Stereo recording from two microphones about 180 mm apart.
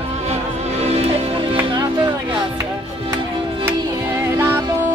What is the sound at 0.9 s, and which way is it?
Music, 35° right (ahead or behind).